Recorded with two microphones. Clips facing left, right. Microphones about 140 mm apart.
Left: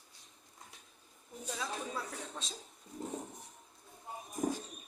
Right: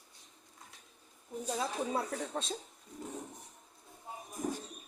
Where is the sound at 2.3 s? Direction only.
55° right (ahead or behind).